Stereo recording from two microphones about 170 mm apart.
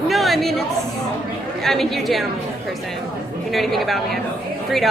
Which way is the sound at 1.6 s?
Centre (ahead or behind).